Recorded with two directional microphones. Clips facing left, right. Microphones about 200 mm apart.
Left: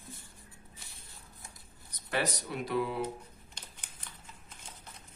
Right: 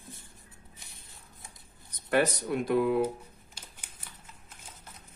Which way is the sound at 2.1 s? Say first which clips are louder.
Right 7 dB; 50° right (ahead or behind).